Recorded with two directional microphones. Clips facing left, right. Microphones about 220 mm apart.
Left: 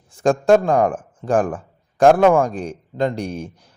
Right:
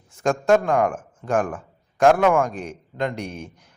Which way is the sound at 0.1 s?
35° left (ahead or behind).